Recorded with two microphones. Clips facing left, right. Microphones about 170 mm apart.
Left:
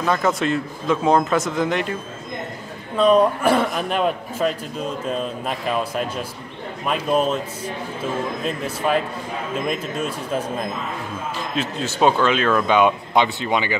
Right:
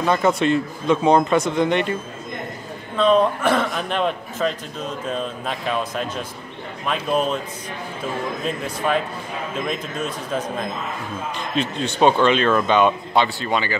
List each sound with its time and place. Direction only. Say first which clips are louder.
0.0 s speech: right 2 dB; centre (ahead or behind)
3.0 s a man's voice: left 1 dB; 10° left (ahead or behind)
8.5 s a man's voice: even; 5° left (ahead or behind)